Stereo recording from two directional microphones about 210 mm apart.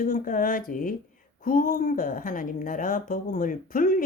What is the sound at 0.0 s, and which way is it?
A woman's voice, 40° left (ahead or behind).